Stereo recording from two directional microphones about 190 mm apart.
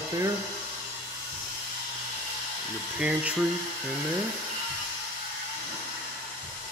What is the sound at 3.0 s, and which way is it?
Speech, 5° right (ahead or behind).